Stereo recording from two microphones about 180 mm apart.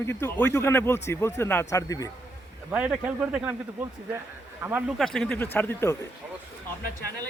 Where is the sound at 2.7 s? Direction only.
5° right (ahead or behind); by 6.0 s 10° left (ahead or behind).